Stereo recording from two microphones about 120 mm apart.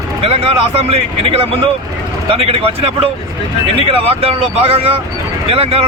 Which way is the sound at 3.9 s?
55° right (ahead or behind).